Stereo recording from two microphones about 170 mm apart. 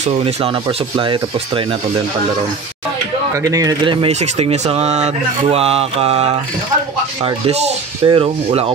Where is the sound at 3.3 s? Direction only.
20° right (ahead or behind).